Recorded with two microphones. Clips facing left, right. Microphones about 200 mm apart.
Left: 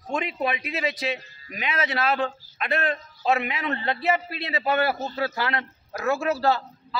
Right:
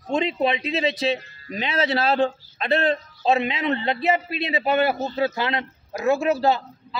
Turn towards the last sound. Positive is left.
turn(degrees=-20)  # may be behind; listen again after turning